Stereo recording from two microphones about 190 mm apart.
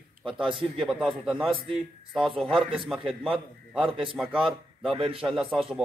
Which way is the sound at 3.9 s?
25° right (ahead or behind).